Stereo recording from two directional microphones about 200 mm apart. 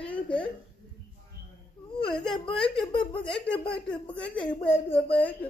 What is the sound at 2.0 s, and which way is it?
Whimper, 5° left (ahead or behind).